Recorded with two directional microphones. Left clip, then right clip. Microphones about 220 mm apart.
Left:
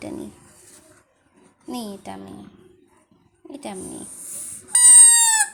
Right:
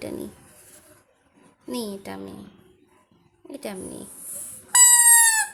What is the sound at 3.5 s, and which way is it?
Speech, 15° right (ahead or behind).